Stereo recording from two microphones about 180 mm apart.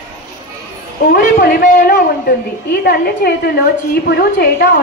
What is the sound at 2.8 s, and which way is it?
A woman's voice, 55° left (ahead or behind).